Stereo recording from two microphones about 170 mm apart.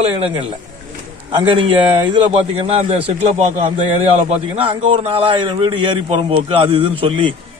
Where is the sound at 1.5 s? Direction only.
30° right (ahead or behind).